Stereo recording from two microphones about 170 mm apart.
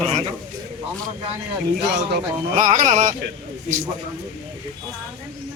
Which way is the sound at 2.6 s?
50° right (ahead or behind).